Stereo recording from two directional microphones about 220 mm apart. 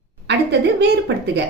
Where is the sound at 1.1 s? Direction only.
50° right (ahead or behind).